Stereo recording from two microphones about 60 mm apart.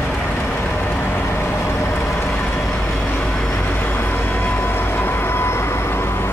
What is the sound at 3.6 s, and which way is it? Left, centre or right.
Vehicle, left.